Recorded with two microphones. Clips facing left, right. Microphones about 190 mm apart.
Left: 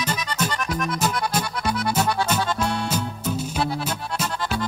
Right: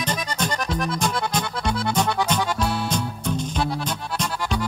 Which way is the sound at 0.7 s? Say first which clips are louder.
Even; 30° right (ahead or behind).